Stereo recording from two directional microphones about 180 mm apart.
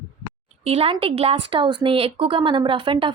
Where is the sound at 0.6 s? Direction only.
35° right (ahead or behind).